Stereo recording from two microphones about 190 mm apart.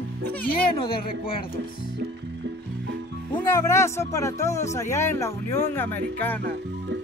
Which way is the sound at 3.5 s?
15° left (ahead or behind).